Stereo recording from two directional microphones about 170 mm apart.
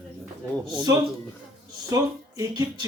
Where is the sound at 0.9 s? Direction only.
20° right (ahead or behind).